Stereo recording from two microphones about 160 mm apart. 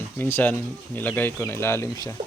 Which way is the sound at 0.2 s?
10° left (ahead or behind).